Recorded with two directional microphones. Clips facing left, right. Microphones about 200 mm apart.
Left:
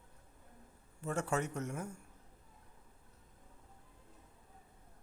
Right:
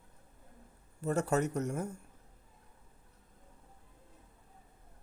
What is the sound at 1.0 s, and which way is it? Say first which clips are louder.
Speech: right 5 dB; 40° right (ahead or behind).